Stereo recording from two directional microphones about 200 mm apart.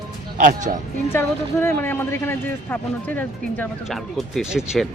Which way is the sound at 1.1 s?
10° left (ahead or behind).